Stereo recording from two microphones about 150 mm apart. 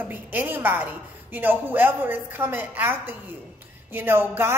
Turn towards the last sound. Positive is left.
turn(degrees=-15)  # may be behind; listen again after turning